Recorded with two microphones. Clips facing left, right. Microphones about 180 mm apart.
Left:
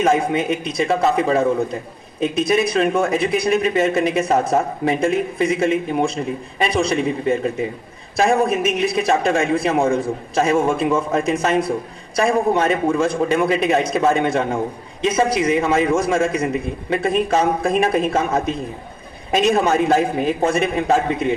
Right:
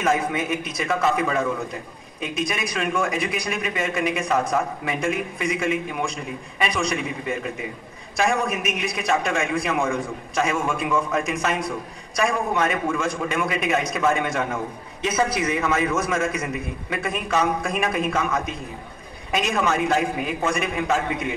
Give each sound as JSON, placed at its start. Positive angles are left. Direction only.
{"t": 0.0, "sound": "a man's voice", "side_deg": 25}